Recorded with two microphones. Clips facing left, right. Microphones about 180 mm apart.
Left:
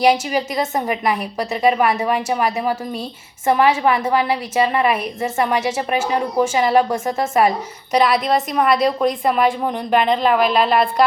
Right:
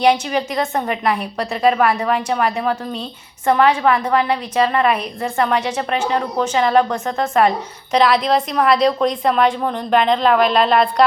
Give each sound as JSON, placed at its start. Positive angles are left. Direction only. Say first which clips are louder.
{"t": 0.0, "sound": "a woman's voice", "louder": "even", "side_deg": 5}
{"t": 0.6, "sound": "a woman's voice", "louder": "even", "side_deg": 20}
{"t": 0.9, "sound": "a woman's voice", "louder": "even", "side_deg": 0}